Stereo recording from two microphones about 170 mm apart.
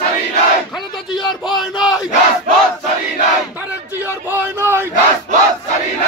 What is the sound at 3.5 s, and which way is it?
Battle cry, 10° right (ahead or behind).